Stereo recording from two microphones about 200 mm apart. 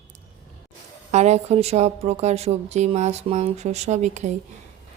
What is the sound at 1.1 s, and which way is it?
A woman's voice, 35° right (ahead or behind).